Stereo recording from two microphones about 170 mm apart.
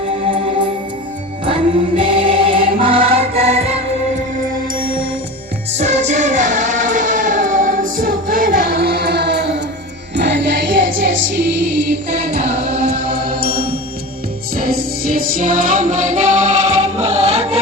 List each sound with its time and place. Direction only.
1.5 s music: 30° right (ahead or behind)
5.7 s music: 40° right (ahead or behind); by 9.6 s 80° right
10.2 s music: 90° right
13.3 s music: 65° right (ahead or behind); by 17.6 s 40° right (ahead or behind)